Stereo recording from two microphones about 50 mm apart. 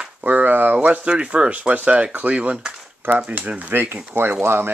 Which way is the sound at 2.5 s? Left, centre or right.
Centre.